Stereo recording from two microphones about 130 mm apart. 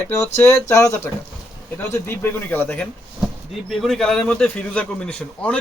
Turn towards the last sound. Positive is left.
turn(degrees=10)  # may be behind; listen again after turning